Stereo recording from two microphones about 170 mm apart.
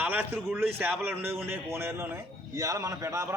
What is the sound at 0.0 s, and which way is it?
A man's voice, 10° right (ahead or behind).